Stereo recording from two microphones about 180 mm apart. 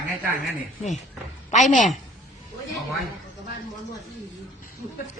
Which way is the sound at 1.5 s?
45° left (ahead or behind).